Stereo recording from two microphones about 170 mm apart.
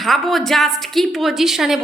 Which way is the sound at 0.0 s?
Centre (ahead or behind).